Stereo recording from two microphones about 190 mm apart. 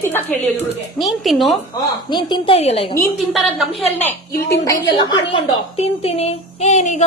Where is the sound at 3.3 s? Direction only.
Centre (ahead or behind).